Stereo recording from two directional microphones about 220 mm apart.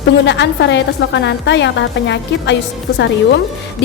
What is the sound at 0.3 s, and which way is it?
A woman's voice, 50° left (ahead or behind).